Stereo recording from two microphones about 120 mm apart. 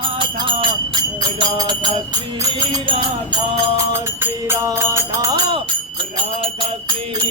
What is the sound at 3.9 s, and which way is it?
Music, 20° right (ahead or behind).